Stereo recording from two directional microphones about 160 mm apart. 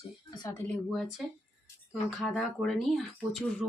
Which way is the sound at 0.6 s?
5° left (ahead or behind).